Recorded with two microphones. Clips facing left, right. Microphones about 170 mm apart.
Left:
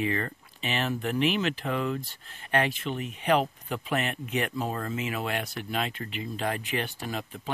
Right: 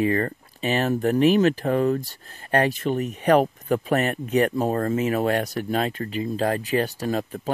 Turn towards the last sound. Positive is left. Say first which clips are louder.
# right 9 dB
turn(degrees=-40)  # may be behind; listen again after turning